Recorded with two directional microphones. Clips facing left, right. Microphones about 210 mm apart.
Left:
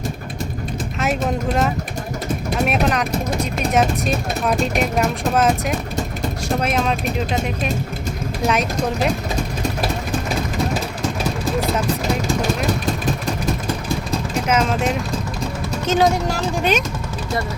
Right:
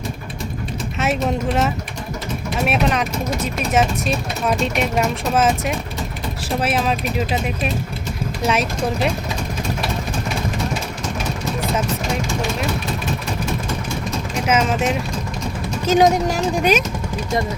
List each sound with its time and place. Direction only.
0.9 s speech: centre (ahead or behind)
14.4 s speech: 5° right (ahead or behind)
15.9 s speech: 15° right (ahead or behind)